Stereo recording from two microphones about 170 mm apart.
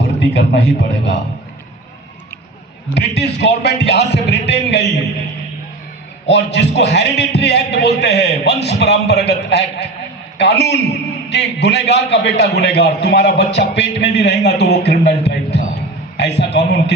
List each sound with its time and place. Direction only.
0.0 s a man's voice: 90° left
2.9 s a man's voice: 85° left
6.2 s a man's voice: 90° left